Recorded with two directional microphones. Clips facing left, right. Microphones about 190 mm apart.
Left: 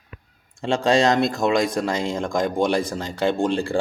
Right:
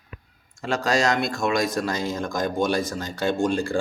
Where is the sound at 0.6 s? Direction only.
30° left (ahead or behind).